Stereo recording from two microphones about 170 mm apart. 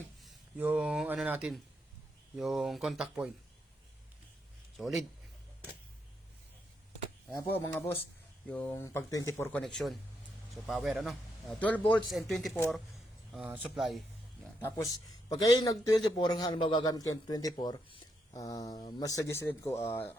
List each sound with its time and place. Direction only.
0.2 s a man's voice: 5° right (ahead or behind)
4.8 s a man's voice: 5° right (ahead or behind)
7.4 s a man's voice: 10° left (ahead or behind)
14.6 s a man's voice: 20° left (ahead or behind)